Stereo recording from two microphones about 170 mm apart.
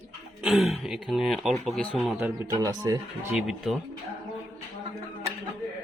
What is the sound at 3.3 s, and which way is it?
Speech, centre (ahead or behind).